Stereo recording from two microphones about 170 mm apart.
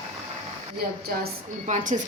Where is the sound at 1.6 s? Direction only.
45° right (ahead or behind).